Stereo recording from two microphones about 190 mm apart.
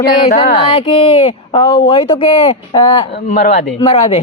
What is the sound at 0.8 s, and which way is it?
Speech, 30° left (ahead or behind).